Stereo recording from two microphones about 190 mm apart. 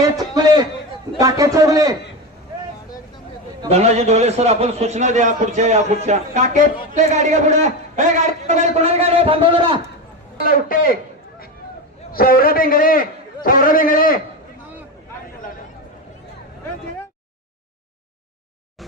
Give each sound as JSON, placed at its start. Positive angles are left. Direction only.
{"t": 0.3, "sound": "a sound", "side_deg": -20}
{"t": 1.2, "sound": "a man's voice", "side_deg": -20}
{"t": 3.7, "sound": "a man's voice", "side_deg": -35}
{"t": 10.4, "sound": "a man's voice", "side_deg": 50}
{"t": 12.1, "sound": "a man's voice", "side_deg": 50}